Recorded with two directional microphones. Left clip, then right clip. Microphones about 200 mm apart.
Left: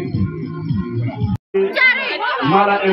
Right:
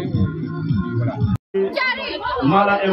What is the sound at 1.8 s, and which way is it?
Chatter, 65° right (ahead or behind).